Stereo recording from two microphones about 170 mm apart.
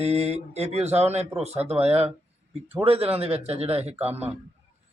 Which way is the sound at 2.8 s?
35° right (ahead or behind).